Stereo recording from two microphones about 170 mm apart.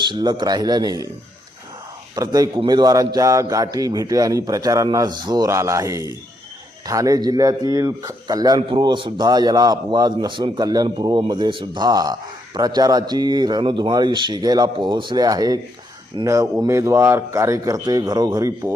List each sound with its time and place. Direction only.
0.0 s a man's voice: 25° right (ahead or behind)
2.1 s a man's voice: 20° right (ahead or behind)